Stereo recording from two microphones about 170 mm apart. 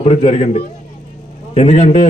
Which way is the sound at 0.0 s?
40° left (ahead or behind).